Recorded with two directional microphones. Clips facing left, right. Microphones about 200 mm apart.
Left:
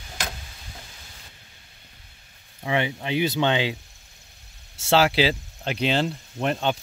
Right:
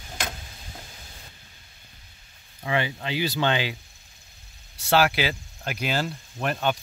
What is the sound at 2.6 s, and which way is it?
Speech, 20° left (ahead or behind).